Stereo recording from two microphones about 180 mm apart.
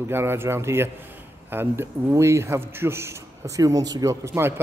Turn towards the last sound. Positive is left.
turn(degrees=-15)  # may be behind; listen again after turning